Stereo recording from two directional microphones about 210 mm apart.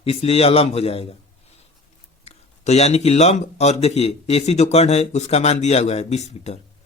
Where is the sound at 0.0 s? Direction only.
30° left (ahead or behind).